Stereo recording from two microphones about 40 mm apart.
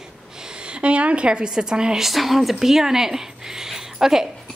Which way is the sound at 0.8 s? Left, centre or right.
Right.